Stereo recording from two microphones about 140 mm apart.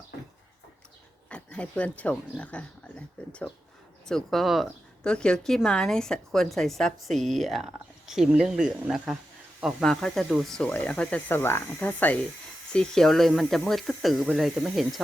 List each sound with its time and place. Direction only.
1.3 s speech: 10° left (ahead or behind)